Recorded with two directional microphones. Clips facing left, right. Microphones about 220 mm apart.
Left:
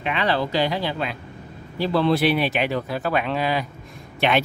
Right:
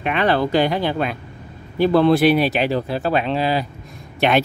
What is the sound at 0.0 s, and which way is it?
Speech, 50° right (ahead or behind).